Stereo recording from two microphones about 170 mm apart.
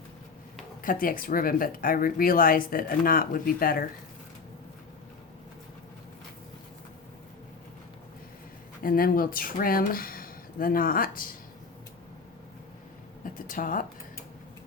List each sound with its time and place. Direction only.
0.8 s speech: 55° left (ahead or behind)
8.8 s speech: 55° left (ahead or behind)
13.2 s a sound: 55° left (ahead or behind)